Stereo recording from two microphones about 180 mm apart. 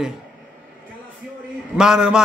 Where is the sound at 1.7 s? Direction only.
5° right (ahead or behind).